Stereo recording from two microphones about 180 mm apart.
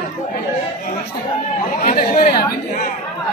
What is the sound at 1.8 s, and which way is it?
Speech, 55° left (ahead or behind).